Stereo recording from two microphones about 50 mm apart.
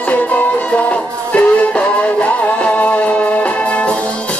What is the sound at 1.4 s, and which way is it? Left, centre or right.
Music, left.